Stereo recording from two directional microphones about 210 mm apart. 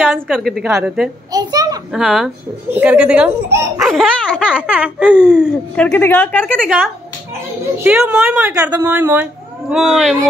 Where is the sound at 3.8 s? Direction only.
Centre (ahead or behind).